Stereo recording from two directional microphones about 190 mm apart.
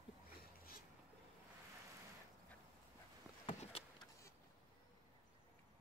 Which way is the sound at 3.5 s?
35° left (ahead or behind).